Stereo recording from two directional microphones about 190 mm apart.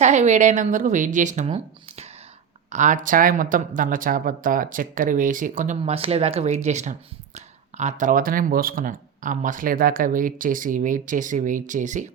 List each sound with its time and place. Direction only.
0.0 s a woman's voice: 40° right (ahead or behind)